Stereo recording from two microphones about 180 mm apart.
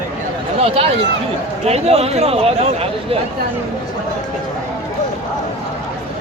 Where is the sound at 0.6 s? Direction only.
35° right (ahead or behind).